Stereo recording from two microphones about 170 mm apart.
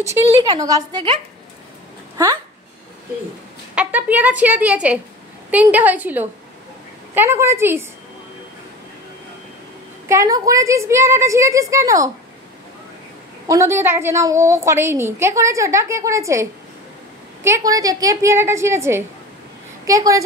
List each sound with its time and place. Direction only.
0.0 s a woman's voice: 15° right (ahead or behind)
0.3 s a woman's voice: 25° right (ahead or behind)
3.7 s a woman's voice: 10° right (ahead or behind)
10.0 s a woman's voice: 20° right (ahead or behind)
13.5 s a woman's voice: 15° right (ahead or behind)